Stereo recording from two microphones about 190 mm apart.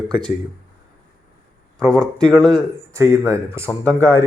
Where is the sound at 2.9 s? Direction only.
15° right (ahead or behind).